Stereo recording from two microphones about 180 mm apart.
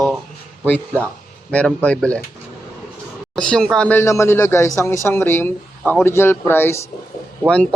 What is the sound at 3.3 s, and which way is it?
Speech, 5° left (ahead or behind).